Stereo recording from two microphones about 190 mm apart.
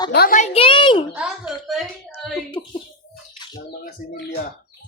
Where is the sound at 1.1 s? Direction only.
5° right (ahead or behind).